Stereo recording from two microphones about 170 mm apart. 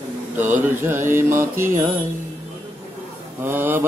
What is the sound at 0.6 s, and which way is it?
Mantra, 15° right (ahead or behind).